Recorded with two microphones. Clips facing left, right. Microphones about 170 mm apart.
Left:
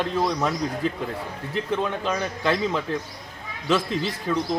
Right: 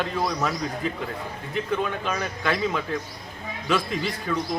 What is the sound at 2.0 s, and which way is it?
Speech, 30° left (ahead or behind).